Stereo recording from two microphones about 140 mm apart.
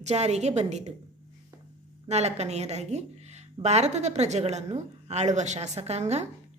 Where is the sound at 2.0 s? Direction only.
50° right (ahead or behind).